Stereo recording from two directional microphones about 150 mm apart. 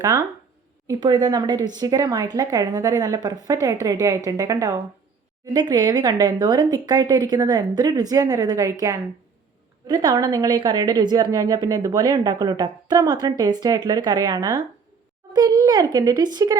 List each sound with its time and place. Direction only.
0.0 s a woman's voice: 25° right (ahead or behind)
9.8 s a woman's voice: 30° right (ahead or behind)